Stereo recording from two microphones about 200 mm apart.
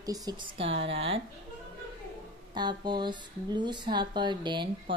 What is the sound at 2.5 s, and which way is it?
Speech, 20° right (ahead or behind).